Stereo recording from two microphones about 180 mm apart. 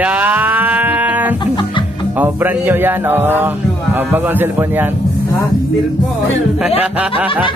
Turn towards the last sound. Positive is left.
turn(degrees=-5)  # may be behind; listen again after turning